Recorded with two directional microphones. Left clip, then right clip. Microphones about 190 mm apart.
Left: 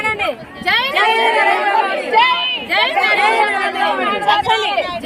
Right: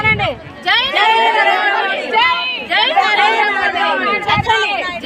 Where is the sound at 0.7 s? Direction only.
25° left (ahead or behind).